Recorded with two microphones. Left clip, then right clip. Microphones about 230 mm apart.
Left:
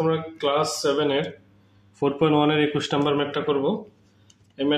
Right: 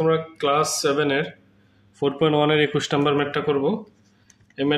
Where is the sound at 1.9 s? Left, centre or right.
Centre.